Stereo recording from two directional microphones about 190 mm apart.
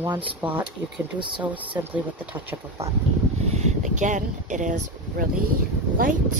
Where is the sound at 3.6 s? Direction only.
40° right (ahead or behind).